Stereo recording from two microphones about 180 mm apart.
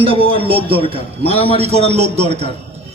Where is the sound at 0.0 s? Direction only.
30° right (ahead or behind).